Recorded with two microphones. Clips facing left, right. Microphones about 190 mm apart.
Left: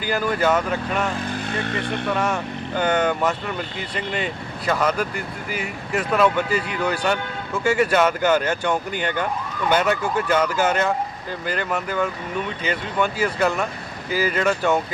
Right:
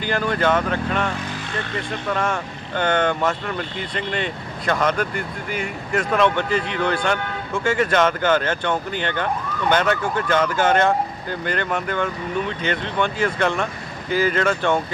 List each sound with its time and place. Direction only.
0.0 s speech: 5° left (ahead or behind)
2.1 s speech: 5° left (ahead or behind)